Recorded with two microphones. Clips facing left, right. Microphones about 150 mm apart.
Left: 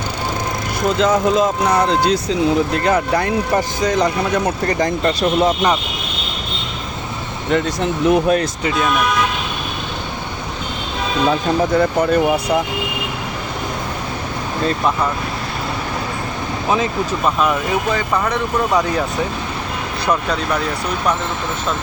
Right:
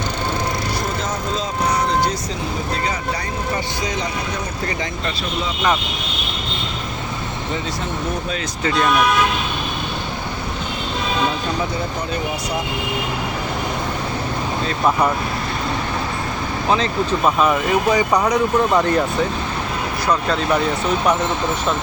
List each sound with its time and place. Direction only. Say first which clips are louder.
0.9 s speech: left 9 dB; 85° left; by 5.5 s 45° left (ahead or behind)
7.5 s speech: left 9 dB; 70° left (ahead or behind)
11.8 s speech: left 9 dB; 60° left (ahead or behind)
16.6 s speech: left 1 dB; 10° left (ahead or behind)
17.2 s speech: right 1 dB; 5° right (ahead or behind)
20.1 s speech: even; centre (ahead or behind)